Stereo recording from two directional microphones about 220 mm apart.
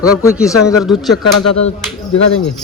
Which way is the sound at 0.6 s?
Centre (ahead or behind).